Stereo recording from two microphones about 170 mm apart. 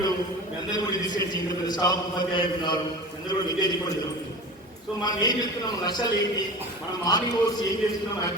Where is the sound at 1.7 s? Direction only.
25° left (ahead or behind).